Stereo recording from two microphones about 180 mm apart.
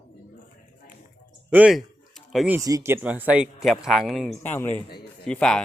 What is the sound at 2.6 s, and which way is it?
Speech, 20° right (ahead or behind).